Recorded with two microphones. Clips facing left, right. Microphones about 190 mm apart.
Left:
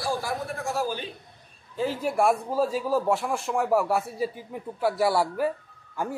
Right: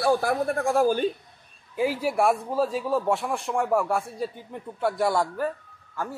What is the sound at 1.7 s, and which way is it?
Speech, 10° right (ahead or behind).